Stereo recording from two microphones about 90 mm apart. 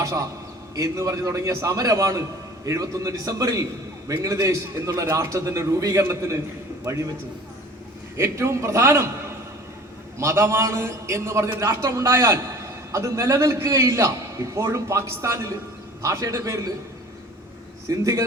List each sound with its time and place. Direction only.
0.0 s a man's voice: 35° right (ahead or behind)
8.1 s a man's voice: 30° right (ahead or behind)
10.2 s a man's voice: 30° right (ahead or behind)
17.8 s a man's voice: 35° right (ahead or behind)